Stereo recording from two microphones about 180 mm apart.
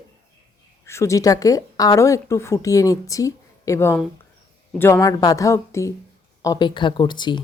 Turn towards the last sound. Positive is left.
turn(degrees=25)  # may be behind; listen again after turning